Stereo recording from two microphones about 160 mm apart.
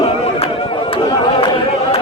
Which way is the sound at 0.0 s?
40° left (ahead or behind).